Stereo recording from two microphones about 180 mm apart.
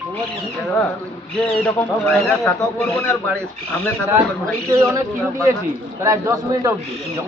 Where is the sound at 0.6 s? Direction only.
5° left (ahead or behind).